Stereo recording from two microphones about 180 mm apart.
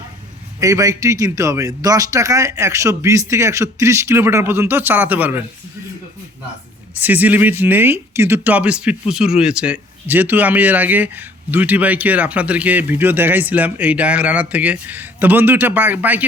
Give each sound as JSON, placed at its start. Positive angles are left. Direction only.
{"t": 0.6, "sound": "speech", "side_deg": -20}
{"t": 7.0, "sound": "speech", "side_deg": -10}